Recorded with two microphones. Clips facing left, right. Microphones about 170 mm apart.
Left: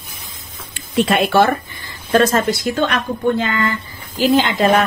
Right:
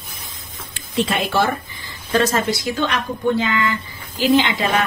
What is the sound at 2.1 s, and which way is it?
A woman's voice, 50° left (ahead or behind).